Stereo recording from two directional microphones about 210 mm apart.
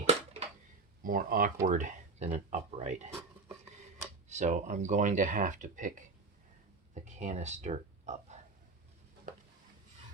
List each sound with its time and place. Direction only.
0.0 s a sound: 30° right (ahead or behind)
1.0 s speech: 40° right (ahead or behind)
4.3 s speech: 35° right (ahead or behind)